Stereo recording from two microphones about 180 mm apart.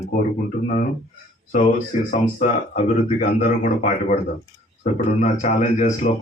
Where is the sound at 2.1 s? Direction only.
45° left (ahead or behind).